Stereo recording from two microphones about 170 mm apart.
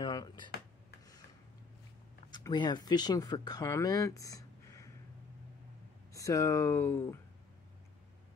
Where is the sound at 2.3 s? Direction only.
25° left (ahead or behind).